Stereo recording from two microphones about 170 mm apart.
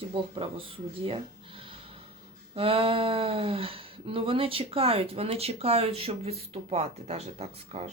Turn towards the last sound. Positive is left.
turn(degrees=-40)  # may be behind; listen again after turning